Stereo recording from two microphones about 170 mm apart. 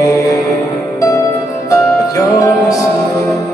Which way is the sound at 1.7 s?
20° left (ahead or behind).